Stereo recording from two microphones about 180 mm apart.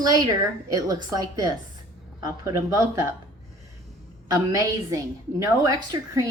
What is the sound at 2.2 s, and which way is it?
Speech, 15° right (ahead or behind).